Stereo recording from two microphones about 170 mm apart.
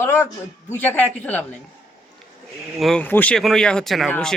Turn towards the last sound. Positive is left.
turn(degrees=5)  # may be behind; listen again after turning